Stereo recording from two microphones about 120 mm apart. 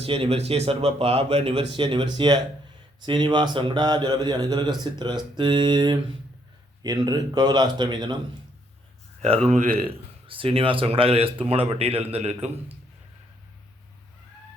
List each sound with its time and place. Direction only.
0.0 s a man's voice: 50° right (ahead or behind)
9.2 s speech: 60° right (ahead or behind)
9.8 s speech: 50° right (ahead or behind)